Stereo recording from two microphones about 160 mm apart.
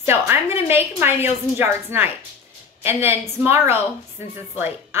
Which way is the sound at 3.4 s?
15° right (ahead or behind).